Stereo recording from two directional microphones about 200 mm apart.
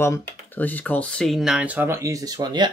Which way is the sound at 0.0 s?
10° left (ahead or behind).